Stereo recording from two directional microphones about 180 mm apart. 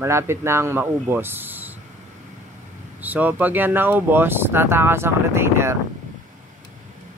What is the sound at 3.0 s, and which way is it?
Speech, 10° right (ahead or behind).